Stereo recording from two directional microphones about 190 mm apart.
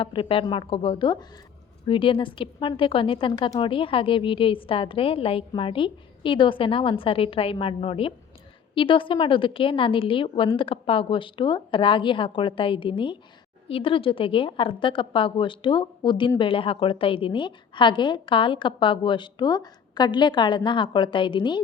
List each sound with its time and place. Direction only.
0.0 s a woman's voice: 25° left (ahead or behind)